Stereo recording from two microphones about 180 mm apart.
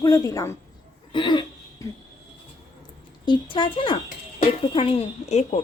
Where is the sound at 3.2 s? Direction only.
25° left (ahead or behind).